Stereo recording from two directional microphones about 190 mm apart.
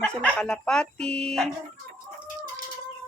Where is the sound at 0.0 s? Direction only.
5° left (ahead or behind).